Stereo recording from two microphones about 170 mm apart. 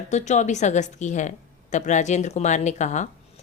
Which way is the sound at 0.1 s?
45° left (ahead or behind).